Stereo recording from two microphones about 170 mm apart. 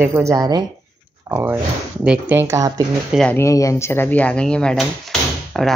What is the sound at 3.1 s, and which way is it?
Speech, 5° left (ahead or behind).